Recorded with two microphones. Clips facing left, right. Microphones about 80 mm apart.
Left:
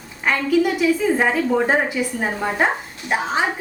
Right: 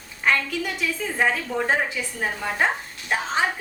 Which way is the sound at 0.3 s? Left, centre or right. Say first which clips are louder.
Left 6 dB; centre.